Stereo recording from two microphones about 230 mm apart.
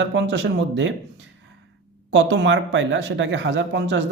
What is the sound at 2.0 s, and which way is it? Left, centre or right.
Speech, right.